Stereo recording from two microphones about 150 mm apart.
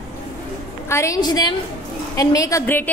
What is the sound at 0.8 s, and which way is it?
A woman's voice, 20° left (ahead or behind).